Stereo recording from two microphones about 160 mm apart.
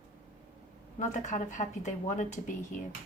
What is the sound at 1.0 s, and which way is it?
A woman's voice, 50° left (ahead or behind).